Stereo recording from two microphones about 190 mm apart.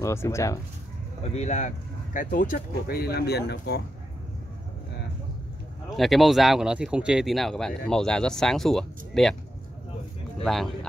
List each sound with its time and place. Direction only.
0.0 s speech: 15° left (ahead or behind)
1.2 s speech: 35° left (ahead or behind); by 3.8 s 60° left (ahead or behind)
5.9 s speech: centre (ahead or behind)
10.4 s speech: centre (ahead or behind)